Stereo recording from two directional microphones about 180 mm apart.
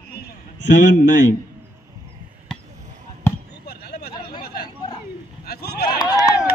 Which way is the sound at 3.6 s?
60° left (ahead or behind).